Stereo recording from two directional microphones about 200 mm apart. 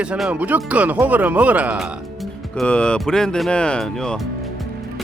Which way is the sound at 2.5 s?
5° left (ahead or behind).